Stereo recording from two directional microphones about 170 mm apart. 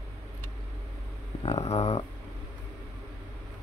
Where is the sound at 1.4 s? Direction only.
35° left (ahead or behind).